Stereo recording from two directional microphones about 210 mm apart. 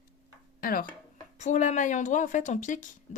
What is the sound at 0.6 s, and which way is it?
A woman's voice, 40° left (ahead or behind).